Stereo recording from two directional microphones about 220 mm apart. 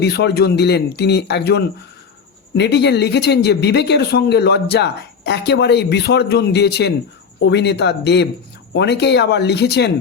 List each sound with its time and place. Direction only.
0.0 s speech: 50° left (ahead or behind)